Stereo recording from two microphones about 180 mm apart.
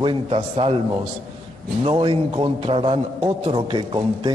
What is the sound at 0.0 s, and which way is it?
Speech, 30° right (ahead or behind).